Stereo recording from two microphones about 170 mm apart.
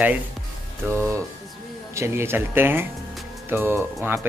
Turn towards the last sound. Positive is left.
turn(degrees=-15)  # may be behind; listen again after turning